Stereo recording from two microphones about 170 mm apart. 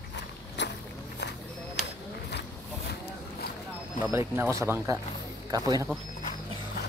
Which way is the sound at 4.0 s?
15° right (ahead or behind).